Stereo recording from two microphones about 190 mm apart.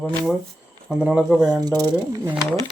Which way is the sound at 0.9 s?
5° right (ahead or behind).